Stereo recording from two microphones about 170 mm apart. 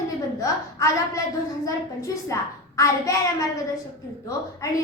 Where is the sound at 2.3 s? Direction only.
20° left (ahead or behind).